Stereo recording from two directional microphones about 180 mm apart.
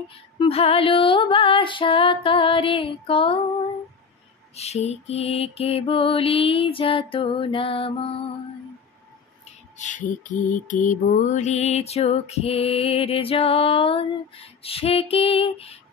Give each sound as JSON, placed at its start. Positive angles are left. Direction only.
{"t": 0.4, "sound": "music", "side_deg": 35}
{"t": 4.6, "sound": "mantra", "side_deg": 35}
{"t": 9.8, "sound": "mantra", "side_deg": 45}